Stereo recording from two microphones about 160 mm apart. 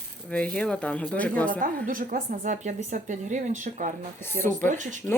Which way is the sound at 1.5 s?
60° right (ahead or behind).